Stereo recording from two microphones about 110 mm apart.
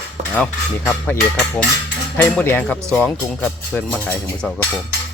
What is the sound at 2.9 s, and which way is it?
Speech, 5° left (ahead or behind).